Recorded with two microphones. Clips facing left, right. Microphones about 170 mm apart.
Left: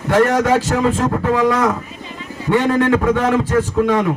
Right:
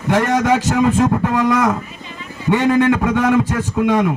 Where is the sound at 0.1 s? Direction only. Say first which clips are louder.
Left 1 dB; 15° right (ahead or behind).